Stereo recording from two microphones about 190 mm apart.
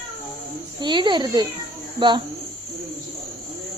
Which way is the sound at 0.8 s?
25° right (ahead or behind).